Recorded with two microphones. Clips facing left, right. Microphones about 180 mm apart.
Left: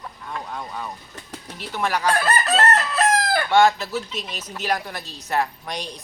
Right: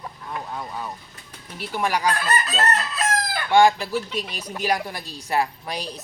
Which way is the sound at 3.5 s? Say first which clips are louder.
Right 2 dB; 15° right (ahead or behind).